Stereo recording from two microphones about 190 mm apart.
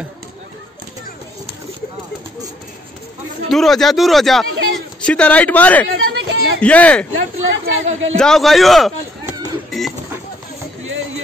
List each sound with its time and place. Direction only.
3.4 s a man's voice: centre (ahead or behind)
5.9 s chatter: 90° right
6.6 s speech: 5° left (ahead or behind)
7.6 s speech: 90° right
8.2 s a man's voice: centre (ahead or behind)
9.7 s a sound: centre (ahead or behind)